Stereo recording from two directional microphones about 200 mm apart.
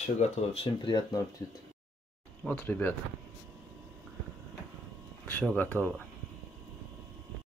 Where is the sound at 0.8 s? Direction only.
20° left (ahead or behind).